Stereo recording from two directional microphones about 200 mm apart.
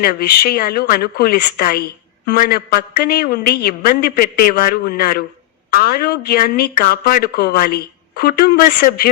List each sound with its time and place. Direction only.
0.0 s speech: 50° left (ahead or behind)